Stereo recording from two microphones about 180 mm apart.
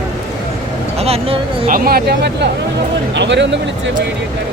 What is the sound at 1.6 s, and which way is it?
Speech, 50° right (ahead or behind).